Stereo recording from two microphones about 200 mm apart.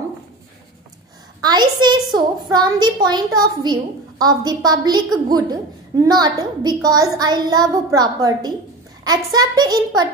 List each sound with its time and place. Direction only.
1.4 s a woman's voice: 20° right (ahead or behind)